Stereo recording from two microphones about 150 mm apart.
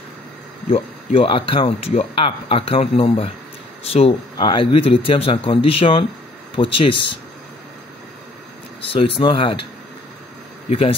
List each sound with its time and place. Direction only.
0.7 s speech: 40° left (ahead or behind)
8.8 s speech: 35° left (ahead or behind)
10.7 s speech: 40° left (ahead or behind)